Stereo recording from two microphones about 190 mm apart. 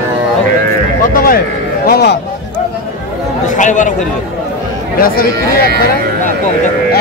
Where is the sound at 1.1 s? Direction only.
50° left (ahead or behind).